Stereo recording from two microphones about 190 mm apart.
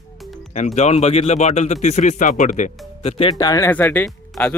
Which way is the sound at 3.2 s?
20° left (ahead or behind).